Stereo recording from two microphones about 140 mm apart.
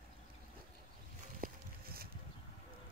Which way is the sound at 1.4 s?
90° right.